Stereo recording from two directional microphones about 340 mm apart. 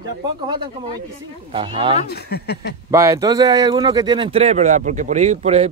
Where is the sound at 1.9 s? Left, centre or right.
Left.